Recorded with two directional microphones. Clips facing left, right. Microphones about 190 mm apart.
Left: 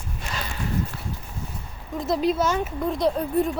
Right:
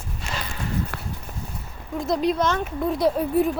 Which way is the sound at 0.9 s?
70° right (ahead or behind).